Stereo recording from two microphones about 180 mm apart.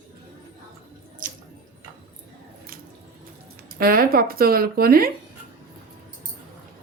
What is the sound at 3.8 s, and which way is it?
Speech, 55° right (ahead or behind).